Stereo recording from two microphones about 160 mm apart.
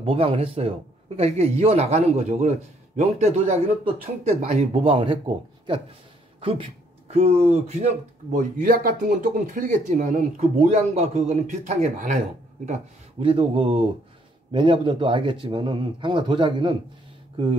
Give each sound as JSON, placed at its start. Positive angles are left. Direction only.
{"t": 0.0, "sound": "speech", "side_deg": -35}
{"t": 13.2, "sound": "speech", "side_deg": -30}